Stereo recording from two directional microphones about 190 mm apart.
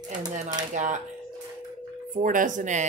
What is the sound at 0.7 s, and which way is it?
Speech, 40° right (ahead or behind).